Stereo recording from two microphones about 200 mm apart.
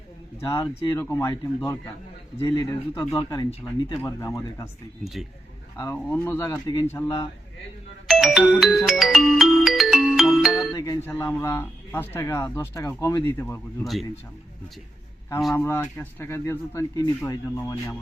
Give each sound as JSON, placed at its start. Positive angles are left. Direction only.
{"t": 0.3, "sound": "a man's voice", "side_deg": 15}
{"t": 5.7, "sound": "a man's voice", "side_deg": 15}
{"t": 8.0, "sound": "music", "side_deg": 0}
{"t": 10.8, "sound": "a man's voice", "side_deg": 15}
{"t": 13.8, "sound": "speech", "side_deg": 0}
{"t": 15.5, "sound": "a man's voice", "side_deg": 10}